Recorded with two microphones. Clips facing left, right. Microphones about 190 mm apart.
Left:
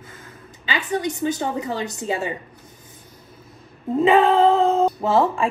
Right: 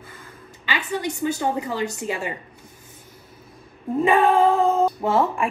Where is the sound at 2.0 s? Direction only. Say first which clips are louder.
Left 3 dB; 25° left (ahead or behind).